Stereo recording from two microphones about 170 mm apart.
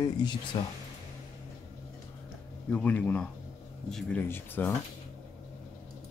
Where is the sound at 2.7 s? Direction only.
10° left (ahead or behind).